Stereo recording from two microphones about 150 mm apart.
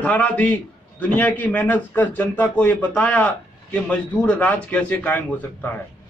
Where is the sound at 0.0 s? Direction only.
10° left (ahead or behind).